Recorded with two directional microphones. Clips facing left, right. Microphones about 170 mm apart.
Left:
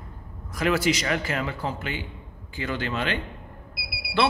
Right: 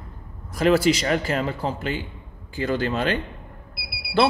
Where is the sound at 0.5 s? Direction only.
30° right (ahead or behind).